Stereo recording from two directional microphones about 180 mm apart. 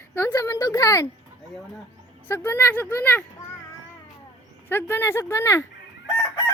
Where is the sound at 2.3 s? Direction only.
15° left (ahead or behind).